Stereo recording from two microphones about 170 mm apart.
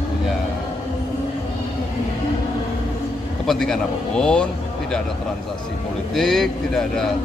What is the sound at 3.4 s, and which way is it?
Speech, centre (ahead or behind).